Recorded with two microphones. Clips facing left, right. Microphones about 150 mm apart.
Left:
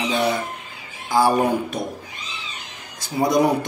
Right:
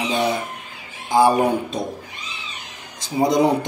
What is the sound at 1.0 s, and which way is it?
Speech, 20° right (ahead or behind).